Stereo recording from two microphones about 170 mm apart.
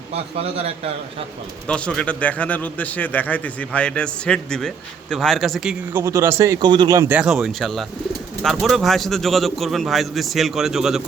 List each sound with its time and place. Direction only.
0.3 s a man's voice: 35° right (ahead or behind)
1.6 s a man's voice: 5° left (ahead or behind)